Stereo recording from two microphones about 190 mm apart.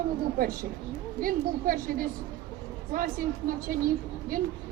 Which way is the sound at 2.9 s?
45° right (ahead or behind).